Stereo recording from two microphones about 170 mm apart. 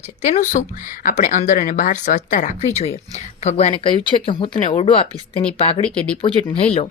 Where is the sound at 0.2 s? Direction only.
45° left (ahead or behind).